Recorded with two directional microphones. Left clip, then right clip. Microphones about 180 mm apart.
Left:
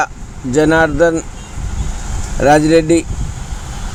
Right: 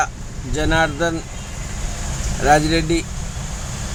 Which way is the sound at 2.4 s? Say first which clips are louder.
Left 6 dB; 45° left (ahead or behind).